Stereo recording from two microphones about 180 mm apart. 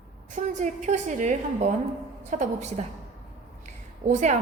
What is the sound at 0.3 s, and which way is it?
A woman's voice, 40° right (ahead or behind).